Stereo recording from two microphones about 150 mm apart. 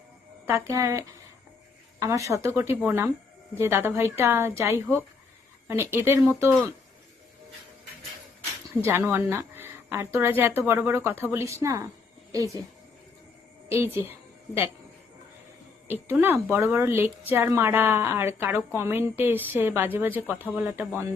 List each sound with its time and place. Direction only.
0.4 s a woman's voice: 20° right (ahead or behind)
8.8 s a woman's voice: 15° right (ahead or behind)
13.7 s a woman's voice: 15° right (ahead or behind)
15.9 s a woman's voice: 15° right (ahead or behind)